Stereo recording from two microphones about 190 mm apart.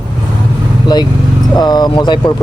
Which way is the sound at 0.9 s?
20° left (ahead or behind).